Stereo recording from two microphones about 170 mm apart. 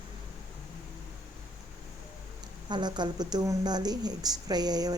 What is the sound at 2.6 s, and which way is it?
Speech, 25° right (ahead or behind).